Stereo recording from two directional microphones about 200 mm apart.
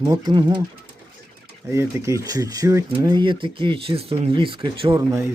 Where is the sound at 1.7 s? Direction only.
15° right (ahead or behind).